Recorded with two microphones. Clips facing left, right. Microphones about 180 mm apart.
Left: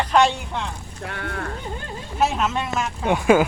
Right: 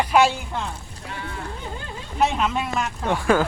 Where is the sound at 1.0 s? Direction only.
60° left (ahead or behind).